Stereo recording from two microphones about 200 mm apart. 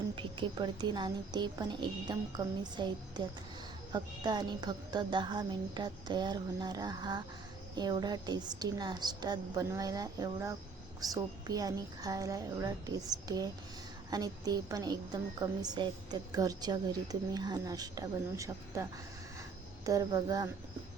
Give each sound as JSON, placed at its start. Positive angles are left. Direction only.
{"t": 0.2, "sound": "a woman's voice", "side_deg": -25}